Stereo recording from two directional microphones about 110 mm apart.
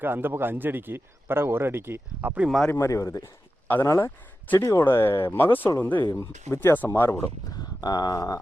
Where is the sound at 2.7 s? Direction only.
30° left (ahead or behind).